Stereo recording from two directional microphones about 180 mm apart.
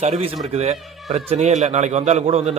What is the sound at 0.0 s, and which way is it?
A man's voice, 35° right (ahead or behind).